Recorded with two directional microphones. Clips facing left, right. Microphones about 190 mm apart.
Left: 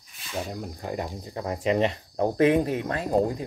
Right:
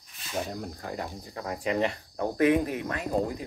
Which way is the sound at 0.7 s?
20° left (ahead or behind).